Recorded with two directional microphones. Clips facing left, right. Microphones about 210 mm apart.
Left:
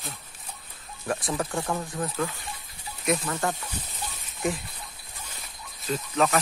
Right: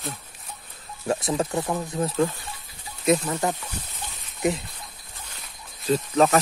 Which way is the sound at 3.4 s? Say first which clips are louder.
Right 3 dB; 20° right (ahead or behind).